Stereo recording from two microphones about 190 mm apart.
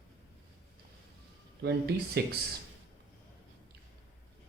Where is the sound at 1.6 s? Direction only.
60° right (ahead or behind).